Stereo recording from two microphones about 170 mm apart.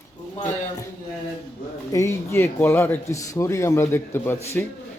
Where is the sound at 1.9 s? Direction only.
15° left (ahead or behind).